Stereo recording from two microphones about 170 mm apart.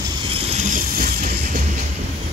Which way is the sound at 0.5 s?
50° right (ahead or behind).